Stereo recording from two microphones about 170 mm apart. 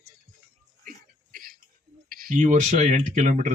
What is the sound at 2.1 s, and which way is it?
Speech, 55° right (ahead or behind).